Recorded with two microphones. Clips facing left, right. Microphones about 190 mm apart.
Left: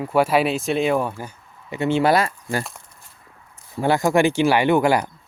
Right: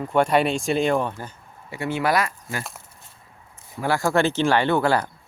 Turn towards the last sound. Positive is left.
turn(degrees=15)  # may be behind; listen again after turning